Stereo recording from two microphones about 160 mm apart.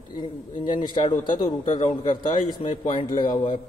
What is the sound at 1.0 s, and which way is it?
A man's voice, 35° left (ahead or behind).